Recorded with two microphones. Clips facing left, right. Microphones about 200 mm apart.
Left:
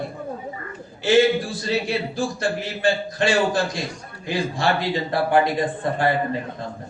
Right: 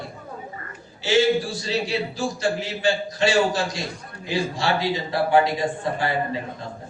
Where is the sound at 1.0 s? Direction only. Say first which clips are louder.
Left 2 dB; 55° left (ahead or behind).